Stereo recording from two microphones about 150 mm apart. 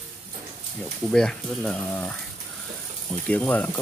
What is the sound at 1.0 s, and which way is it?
Speech, 5° left (ahead or behind).